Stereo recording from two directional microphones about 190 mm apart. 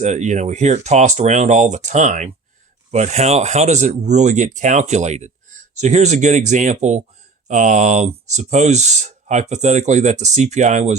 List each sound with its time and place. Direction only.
0.0 s speech: 40° right (ahead or behind)